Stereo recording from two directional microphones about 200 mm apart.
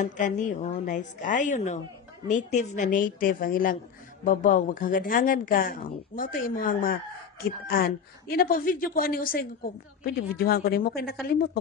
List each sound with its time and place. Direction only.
0.0 s a woman's voice: 40° left (ahead or behind)